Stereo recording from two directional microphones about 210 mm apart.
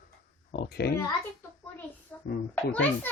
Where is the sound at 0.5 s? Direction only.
50° left (ahead or behind).